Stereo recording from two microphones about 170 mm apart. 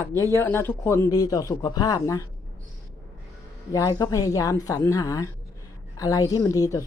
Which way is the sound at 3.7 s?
20° left (ahead or behind).